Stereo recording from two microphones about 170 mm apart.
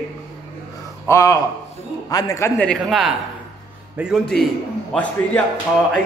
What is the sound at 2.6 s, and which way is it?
A man's voice, 5° left (ahead or behind).